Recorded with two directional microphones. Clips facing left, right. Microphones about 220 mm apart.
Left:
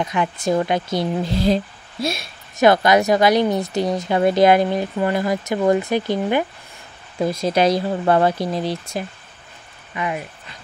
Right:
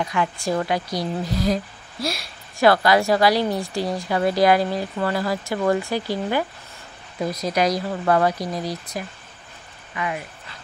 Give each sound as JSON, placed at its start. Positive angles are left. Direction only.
{"t": 0.0, "sound": "speech", "side_deg": 20}